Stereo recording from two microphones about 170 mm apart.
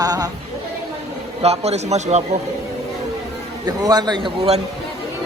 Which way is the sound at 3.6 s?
25° right (ahead or behind).